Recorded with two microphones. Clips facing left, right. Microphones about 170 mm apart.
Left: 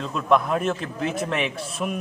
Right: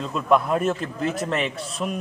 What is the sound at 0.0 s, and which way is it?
A man's voice, centre (ahead or behind).